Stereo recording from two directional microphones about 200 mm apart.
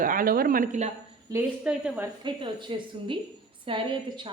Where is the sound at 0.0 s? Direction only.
45° right (ahead or behind).